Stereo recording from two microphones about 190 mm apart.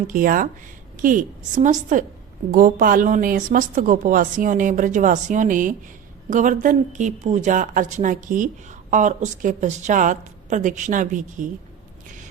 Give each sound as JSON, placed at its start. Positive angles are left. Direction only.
{"t": 0.1, "sound": "a woman's voice", "side_deg": -45}